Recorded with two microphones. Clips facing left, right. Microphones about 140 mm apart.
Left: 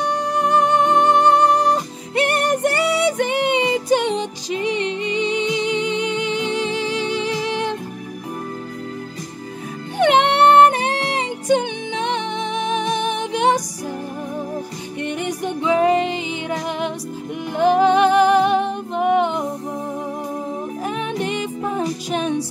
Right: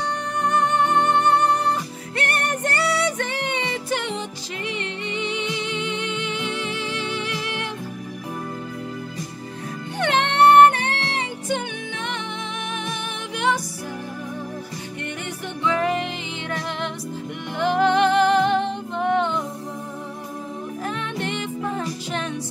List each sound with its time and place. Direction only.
0.0 s music: 15° left (ahead or behind)
9.9 s music: 15° left (ahead or behind)
15.2 s music: 15° left (ahead or behind)
21.2 s music: 15° left (ahead or behind)